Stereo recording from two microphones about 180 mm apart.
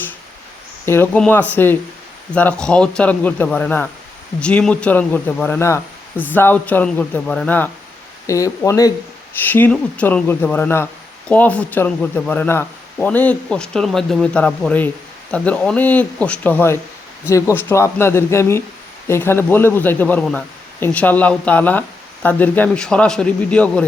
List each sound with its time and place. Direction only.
0.9 s speech: 10° left (ahead or behind)